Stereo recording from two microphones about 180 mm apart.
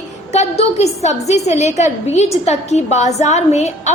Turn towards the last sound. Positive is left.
turn(degrees=40)  # may be behind; listen again after turning